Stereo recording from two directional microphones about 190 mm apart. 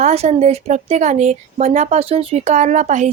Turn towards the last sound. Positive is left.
turn(degrees=-40)  # may be behind; listen again after turning